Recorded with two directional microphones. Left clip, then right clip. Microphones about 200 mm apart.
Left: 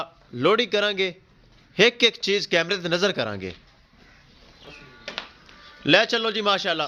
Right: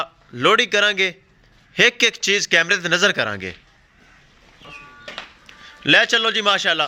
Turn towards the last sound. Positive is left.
turn(degrees=-5)  # may be behind; listen again after turning